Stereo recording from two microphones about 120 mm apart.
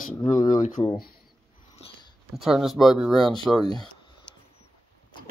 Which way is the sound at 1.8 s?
40° left (ahead or behind).